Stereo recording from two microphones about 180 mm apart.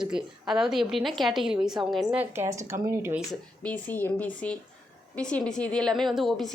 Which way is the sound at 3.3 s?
10° left (ahead or behind).